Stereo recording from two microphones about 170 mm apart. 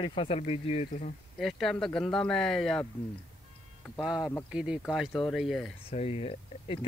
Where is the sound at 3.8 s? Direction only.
Centre (ahead or behind).